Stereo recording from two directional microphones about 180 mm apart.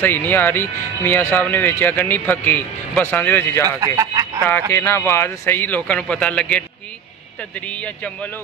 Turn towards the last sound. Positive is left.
turn(degrees=5)  # may be behind; listen again after turning